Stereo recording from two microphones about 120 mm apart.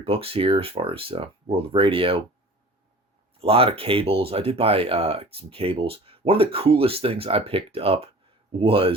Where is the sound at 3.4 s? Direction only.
50° right (ahead or behind).